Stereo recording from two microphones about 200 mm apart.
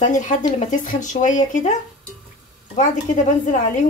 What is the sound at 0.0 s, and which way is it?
Speech, 40° left (ahead or behind).